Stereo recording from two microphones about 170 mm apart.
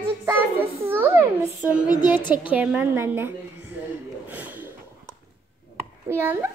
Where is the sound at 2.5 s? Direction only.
10° right (ahead or behind).